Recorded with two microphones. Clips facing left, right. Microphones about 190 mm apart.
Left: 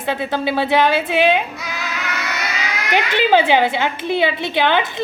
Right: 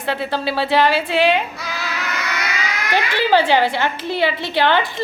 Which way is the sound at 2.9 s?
20° left (ahead or behind).